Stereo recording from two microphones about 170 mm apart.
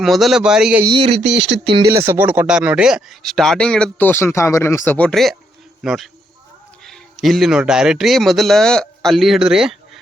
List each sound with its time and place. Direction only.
0.0 s speech: centre (ahead or behind)
1.2 s speech: 90° right
2.0 s a man's voice: 10° right (ahead or behind)